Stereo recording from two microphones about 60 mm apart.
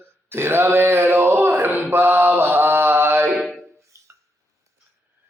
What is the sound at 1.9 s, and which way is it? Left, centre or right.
Mantra, right.